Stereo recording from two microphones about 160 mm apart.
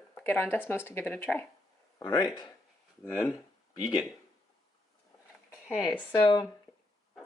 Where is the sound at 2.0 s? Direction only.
25° left (ahead or behind).